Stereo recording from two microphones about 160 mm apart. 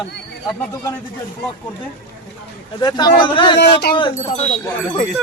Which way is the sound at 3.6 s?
90° left.